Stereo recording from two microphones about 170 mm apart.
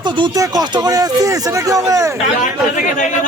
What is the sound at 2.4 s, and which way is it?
Speech, 50° left (ahead or behind).